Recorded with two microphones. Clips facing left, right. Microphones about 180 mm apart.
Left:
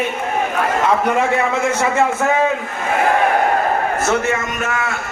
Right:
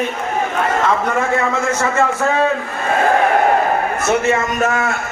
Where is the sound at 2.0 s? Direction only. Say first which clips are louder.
Even; 15° left (ahead or behind).